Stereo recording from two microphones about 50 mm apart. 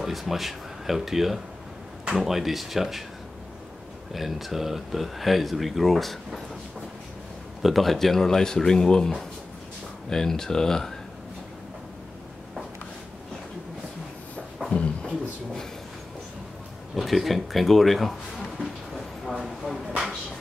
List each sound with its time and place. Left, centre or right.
0.0 s speech: centre
4.1 s speech: centre
7.6 s speech: centre
14.7 s a sound: left
16.9 s speech: centre
18.9 s a sound: centre